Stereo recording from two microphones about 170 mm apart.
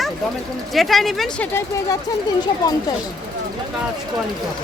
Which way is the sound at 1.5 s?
20° left (ahead or behind).